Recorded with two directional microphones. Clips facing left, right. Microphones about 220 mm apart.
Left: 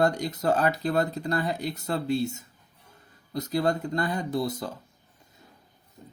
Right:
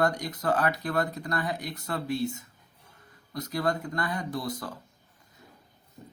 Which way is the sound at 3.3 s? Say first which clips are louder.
Left 3 dB; 25° left (ahead or behind).